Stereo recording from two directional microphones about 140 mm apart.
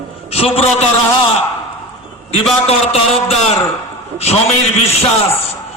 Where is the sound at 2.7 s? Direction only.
45° left (ahead or behind).